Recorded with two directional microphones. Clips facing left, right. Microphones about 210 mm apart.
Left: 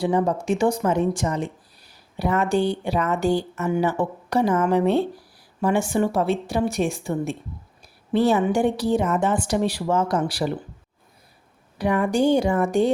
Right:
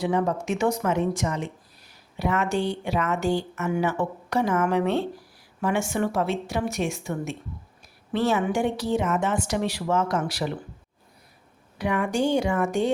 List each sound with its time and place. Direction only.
0.0 s a woman's voice: 30° left (ahead or behind)
11.8 s a woman's voice: 35° left (ahead or behind)